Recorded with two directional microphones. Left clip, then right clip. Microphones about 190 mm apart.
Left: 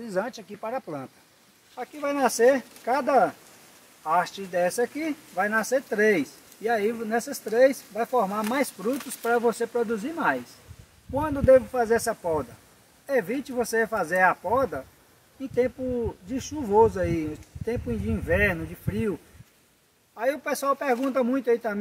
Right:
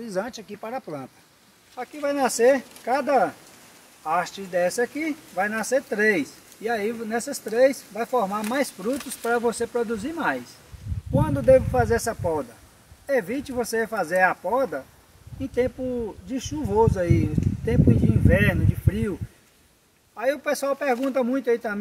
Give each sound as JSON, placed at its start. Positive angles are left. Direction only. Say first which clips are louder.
{"t": 0.0, "sound": "speech", "louder": "even", "side_deg": 20}
{"t": 20.2, "sound": "speech", "louder": "right 3 dB", "side_deg": 15}